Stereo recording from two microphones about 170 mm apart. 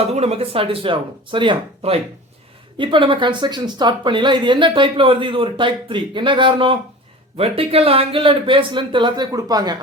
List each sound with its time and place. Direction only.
0.0 s speech: 35° right (ahead or behind)